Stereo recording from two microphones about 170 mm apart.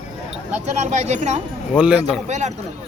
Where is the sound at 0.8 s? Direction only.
40° right (ahead or behind).